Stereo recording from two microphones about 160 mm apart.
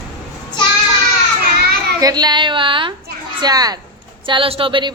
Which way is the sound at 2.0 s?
25° right (ahead or behind).